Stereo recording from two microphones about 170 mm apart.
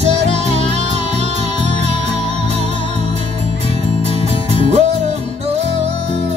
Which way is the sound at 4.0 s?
40° right (ahead or behind).